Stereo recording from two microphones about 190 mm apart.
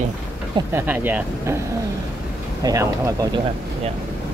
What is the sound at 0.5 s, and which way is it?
Speech, 10° right (ahead or behind).